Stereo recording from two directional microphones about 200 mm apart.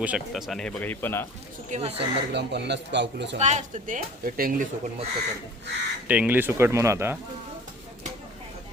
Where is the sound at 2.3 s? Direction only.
60° right (ahead or behind).